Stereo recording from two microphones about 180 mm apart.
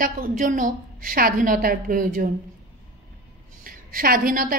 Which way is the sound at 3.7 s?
50° right (ahead or behind).